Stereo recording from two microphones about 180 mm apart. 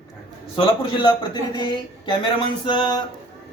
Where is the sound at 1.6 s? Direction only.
25° left (ahead or behind).